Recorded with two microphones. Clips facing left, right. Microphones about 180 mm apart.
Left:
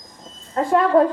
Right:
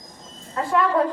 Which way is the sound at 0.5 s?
40° left (ahead or behind).